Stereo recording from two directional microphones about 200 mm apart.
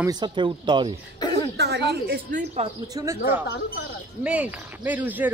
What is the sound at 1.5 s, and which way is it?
A woman's voice, 55° right (ahead or behind).